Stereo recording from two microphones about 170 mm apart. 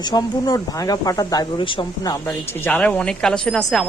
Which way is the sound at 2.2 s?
10° left (ahead or behind).